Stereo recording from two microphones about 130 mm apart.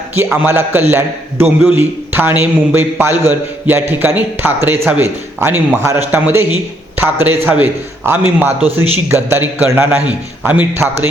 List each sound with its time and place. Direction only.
0.4 s a man's voice: 15° right (ahead or behind)